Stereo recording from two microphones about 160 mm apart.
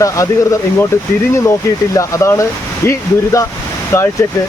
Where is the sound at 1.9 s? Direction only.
20° left (ahead or behind).